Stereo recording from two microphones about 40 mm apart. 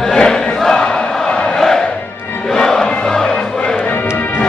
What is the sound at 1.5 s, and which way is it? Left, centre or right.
Battle cry, centre.